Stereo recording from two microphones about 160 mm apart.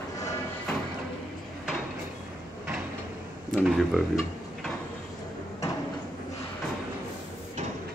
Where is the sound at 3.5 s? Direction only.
Centre (ahead or behind).